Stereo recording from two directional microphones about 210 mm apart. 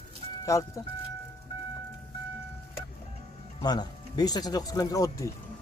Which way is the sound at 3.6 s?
20° left (ahead or behind).